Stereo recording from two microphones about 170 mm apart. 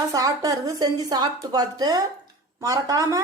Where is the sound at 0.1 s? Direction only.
20° right (ahead or behind).